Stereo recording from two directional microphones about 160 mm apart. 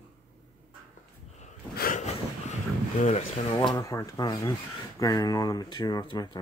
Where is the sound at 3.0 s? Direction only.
40° left (ahead or behind).